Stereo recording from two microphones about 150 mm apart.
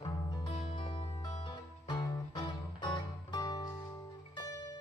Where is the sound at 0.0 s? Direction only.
30° left (ahead or behind).